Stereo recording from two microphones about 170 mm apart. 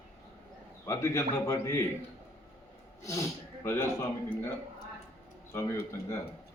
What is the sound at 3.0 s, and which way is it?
Speech, 20° left (ahead or behind).